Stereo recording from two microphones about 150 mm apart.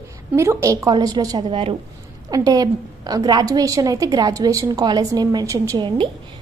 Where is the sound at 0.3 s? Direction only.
20° right (ahead or behind).